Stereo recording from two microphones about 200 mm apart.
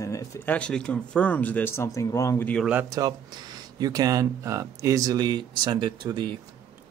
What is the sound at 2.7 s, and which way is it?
Speech, 10° right (ahead or behind).